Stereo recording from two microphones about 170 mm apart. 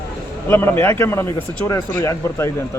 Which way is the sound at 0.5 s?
15° left (ahead or behind).